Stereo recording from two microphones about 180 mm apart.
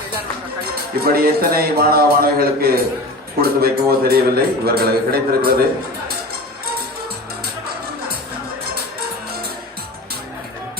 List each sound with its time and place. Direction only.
0.6 s speech: 55° right (ahead or behind)